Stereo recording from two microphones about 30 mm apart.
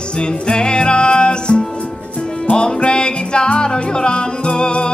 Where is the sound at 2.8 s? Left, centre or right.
Left.